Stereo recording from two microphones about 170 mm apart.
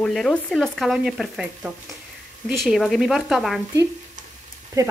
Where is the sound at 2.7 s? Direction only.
Centre (ahead or behind).